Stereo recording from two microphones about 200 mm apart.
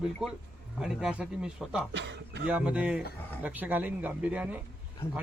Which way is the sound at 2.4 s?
5° right (ahead or behind).